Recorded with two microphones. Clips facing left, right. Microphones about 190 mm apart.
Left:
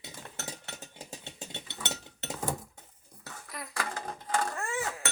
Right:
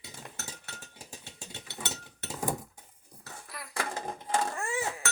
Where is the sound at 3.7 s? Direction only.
25° right (ahead or behind).